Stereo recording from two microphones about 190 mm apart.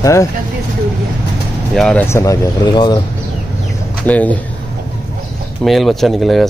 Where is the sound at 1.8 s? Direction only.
5° left (ahead or behind); by 3.0 s 20° left (ahead or behind).